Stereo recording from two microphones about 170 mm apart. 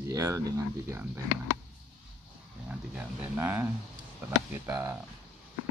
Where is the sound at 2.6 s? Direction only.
10° right (ahead or behind).